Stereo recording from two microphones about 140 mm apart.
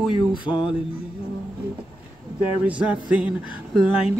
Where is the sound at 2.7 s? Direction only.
10° right (ahead or behind).